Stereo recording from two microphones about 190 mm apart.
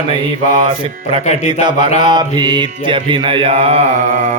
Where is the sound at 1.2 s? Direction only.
35° left (ahead or behind).